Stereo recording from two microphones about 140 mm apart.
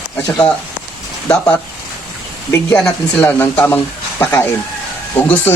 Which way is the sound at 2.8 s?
15° left (ahead or behind).